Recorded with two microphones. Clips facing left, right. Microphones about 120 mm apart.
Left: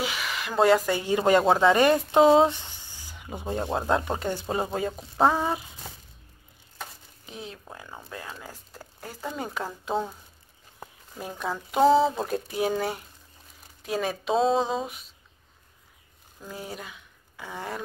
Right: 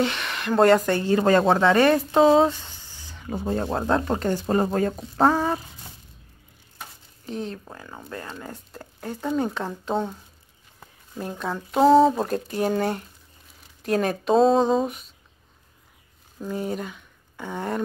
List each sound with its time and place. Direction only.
0.0 s speech: 5° left (ahead or behind)
1.7 s speech: 15° left (ahead or behind)
3.6 s speech: centre (ahead or behind)
7.2 s speech: 5° left (ahead or behind)
11.1 s speech: 10° left (ahead or behind)
16.4 s speech: centre (ahead or behind)